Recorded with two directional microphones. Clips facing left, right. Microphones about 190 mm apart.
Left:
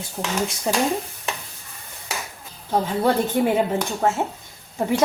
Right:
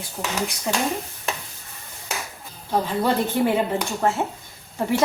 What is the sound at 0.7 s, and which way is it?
Speech, 35° left (ahead or behind).